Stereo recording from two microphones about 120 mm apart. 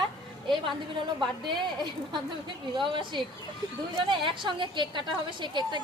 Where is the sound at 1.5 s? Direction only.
40° right (ahead or behind).